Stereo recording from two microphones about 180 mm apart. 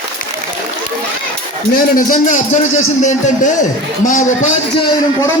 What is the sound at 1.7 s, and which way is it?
A man's voice, 50° left (ahead or behind).